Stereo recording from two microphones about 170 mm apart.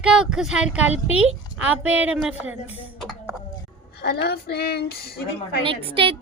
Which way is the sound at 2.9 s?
Centre (ahead or behind).